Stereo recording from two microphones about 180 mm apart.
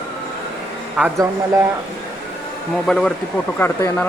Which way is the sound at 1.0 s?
10° right (ahead or behind).